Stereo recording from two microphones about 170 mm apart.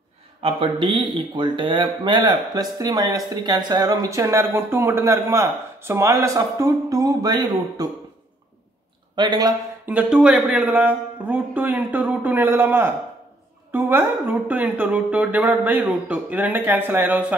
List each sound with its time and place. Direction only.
0.4 s speech: 35° right (ahead or behind)
9.1 s speech: 25° right (ahead or behind)
9.8 s speech: 5° right (ahead or behind)